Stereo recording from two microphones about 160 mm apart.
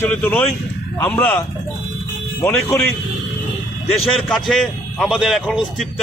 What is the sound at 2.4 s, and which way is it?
Speech, 15° left (ahead or behind).